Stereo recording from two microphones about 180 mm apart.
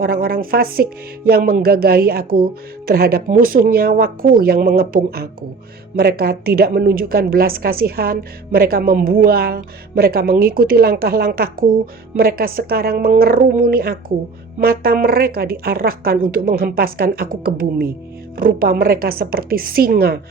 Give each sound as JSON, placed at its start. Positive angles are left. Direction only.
{"t": 0.0, "sound": "speech", "side_deg": -55}